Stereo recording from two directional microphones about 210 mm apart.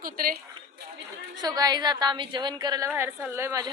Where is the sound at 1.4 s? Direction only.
20° right (ahead or behind).